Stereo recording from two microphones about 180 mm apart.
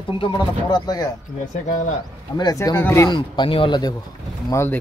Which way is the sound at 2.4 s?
20° left (ahead or behind).